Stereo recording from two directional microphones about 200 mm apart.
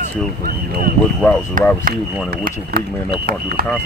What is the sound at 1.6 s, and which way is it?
Speech, 40° right (ahead or behind).